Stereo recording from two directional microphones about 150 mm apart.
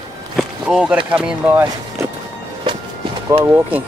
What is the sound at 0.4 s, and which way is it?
Speech, 5° right (ahead or behind).